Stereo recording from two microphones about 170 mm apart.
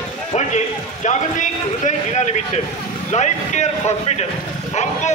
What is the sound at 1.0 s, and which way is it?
A man's voice, 45° left (ahead or behind).